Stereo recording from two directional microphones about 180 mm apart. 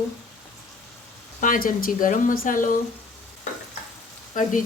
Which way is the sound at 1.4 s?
50° left (ahead or behind).